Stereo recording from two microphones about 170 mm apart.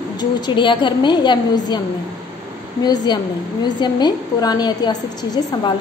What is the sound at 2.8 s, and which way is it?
A woman's voice, 25° left (ahead or behind).